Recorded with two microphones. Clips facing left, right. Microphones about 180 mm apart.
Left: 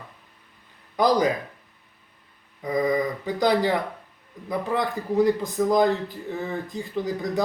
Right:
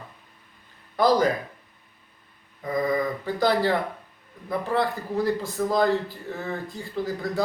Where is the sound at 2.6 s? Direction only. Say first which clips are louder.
Left 1 dB; 15° left (ahead or behind).